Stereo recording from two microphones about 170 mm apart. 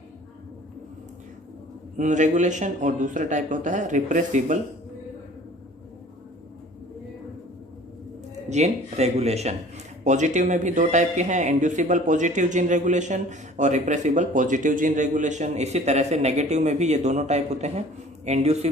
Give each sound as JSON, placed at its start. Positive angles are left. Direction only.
{"t": 2.0, "sound": "speech", "side_deg": -45}
{"t": 8.4, "sound": "a man's voice", "side_deg": -40}